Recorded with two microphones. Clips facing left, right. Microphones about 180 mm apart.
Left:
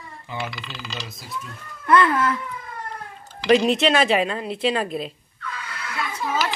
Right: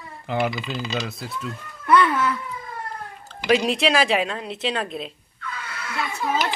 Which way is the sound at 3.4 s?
Centre (ahead or behind).